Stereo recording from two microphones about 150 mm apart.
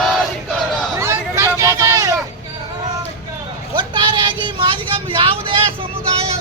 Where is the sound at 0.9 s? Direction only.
20° right (ahead or behind).